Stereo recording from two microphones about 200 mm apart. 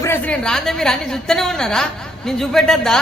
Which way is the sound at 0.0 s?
10° left (ahead or behind).